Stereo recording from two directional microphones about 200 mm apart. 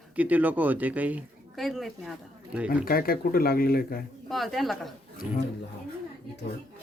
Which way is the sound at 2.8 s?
45° left (ahead or behind).